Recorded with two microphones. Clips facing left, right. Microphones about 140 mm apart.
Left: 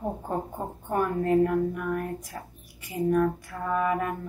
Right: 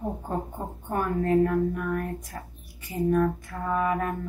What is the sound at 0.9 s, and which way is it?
Speech, 10° left (ahead or behind).